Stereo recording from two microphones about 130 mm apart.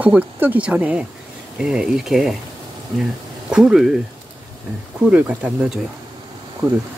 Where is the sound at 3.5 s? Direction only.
5° right (ahead or behind).